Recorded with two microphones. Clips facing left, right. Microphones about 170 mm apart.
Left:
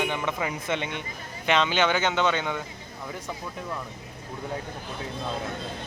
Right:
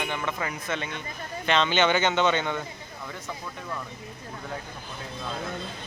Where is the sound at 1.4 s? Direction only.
10° left (ahead or behind).